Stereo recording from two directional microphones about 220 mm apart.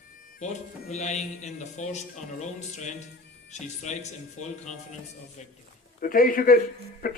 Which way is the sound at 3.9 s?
30° left (ahead or behind).